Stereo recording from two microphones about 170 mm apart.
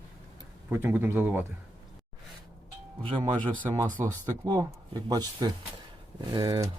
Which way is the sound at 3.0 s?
30° right (ahead or behind).